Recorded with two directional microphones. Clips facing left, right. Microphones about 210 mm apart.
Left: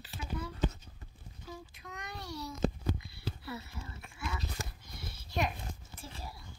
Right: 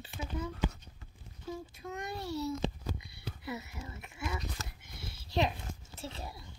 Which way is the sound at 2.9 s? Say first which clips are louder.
Left 3 dB; 20° right (ahead or behind).